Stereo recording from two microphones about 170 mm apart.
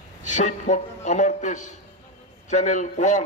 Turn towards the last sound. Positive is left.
turn(degrees=45)  # may be behind; listen again after turning